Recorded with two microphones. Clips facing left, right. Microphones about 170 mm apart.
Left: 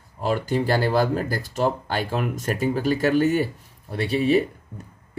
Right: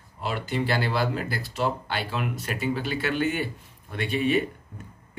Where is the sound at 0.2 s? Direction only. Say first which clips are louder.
Left 5 dB; 40° left (ahead or behind).